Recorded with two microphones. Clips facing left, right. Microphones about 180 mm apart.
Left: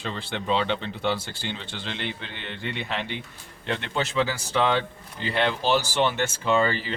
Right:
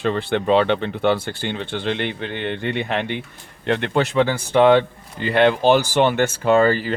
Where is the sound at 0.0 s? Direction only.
60° right (ahead or behind).